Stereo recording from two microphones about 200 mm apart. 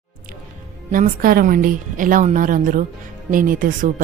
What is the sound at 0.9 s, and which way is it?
Speech, 40° right (ahead or behind).